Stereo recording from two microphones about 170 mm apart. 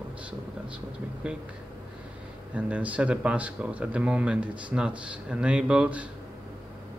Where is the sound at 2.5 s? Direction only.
10° right (ahead or behind).